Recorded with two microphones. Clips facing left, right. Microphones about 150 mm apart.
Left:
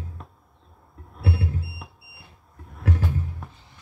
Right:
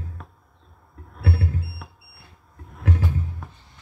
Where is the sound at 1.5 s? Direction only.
20° left (ahead or behind).